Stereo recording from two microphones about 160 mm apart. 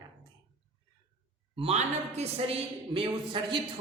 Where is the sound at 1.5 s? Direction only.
40° right (ahead or behind).